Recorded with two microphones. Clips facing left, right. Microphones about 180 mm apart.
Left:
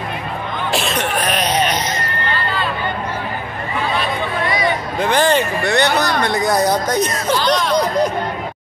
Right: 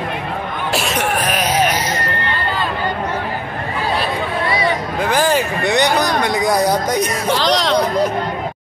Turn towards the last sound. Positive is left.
turn(degrees=-80)